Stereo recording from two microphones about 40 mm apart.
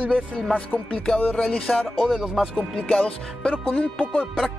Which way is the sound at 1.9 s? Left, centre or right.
Centre.